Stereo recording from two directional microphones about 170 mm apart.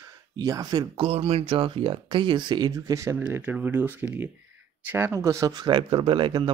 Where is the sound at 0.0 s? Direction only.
20° right (ahead or behind).